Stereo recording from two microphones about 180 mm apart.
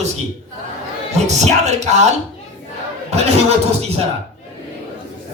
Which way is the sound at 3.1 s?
35° right (ahead or behind).